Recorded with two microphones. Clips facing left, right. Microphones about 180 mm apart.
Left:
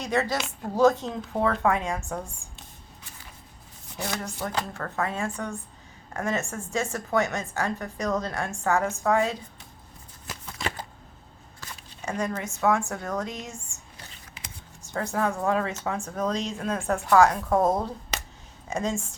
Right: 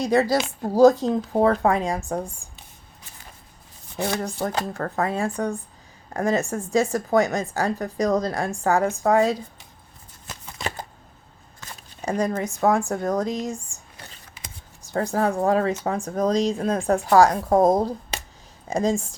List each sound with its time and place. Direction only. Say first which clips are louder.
0.0 s speech: right 7 dB; 35° right (ahead or behind)
3.9 s speech: right 7 dB; 30° right (ahead or behind)
11.7 s a sound: right 6 dB; 40° right (ahead or behind)
12.4 s speech: right 4 dB; 35° right (ahead or behind)
14.8 s speech: right 5 dB; 35° right (ahead or behind)